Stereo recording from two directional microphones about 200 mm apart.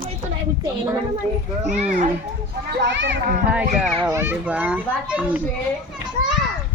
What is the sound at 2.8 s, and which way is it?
Speech, 60° right (ahead or behind).